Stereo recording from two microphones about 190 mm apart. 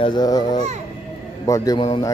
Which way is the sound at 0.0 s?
20° left (ahead or behind).